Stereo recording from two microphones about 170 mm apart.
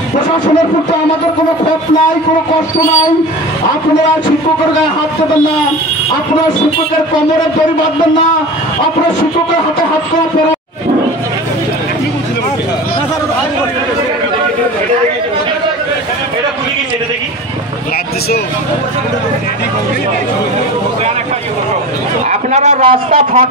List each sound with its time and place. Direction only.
22.3 s a man's voice: 45° right (ahead or behind)